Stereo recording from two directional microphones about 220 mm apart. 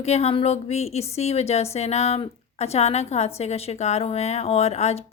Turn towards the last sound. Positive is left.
turn(degrees=30)  # may be behind; listen again after turning